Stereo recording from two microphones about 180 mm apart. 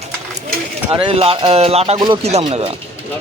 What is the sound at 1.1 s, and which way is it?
Speech, 30° right (ahead or behind).